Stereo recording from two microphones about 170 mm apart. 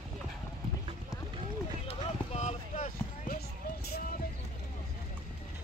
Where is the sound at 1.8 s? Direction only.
40° left (ahead or behind).